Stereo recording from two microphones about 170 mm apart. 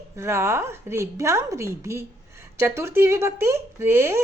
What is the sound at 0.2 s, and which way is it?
A woman's voice, 15° right (ahead or behind).